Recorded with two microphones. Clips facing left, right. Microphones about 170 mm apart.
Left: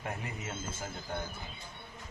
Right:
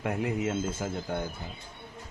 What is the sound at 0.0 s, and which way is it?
Speech, 85° right.